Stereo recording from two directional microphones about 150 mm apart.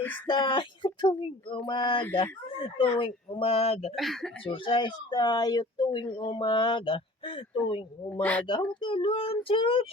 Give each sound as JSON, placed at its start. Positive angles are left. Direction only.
{"t": 0.3, "sound": "speech", "side_deg": 35}
{"t": 3.9, "sound": "speech", "side_deg": 0}
{"t": 4.4, "sound": "speech", "side_deg": 35}
{"t": 8.1, "sound": "speech", "side_deg": 10}
{"t": 8.8, "sound": "speech", "side_deg": 35}